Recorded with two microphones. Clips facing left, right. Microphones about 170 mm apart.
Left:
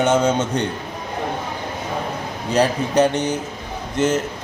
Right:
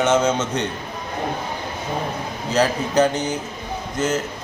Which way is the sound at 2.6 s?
30° left (ahead or behind).